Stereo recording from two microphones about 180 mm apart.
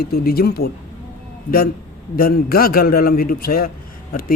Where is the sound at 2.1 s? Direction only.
55° left (ahead or behind).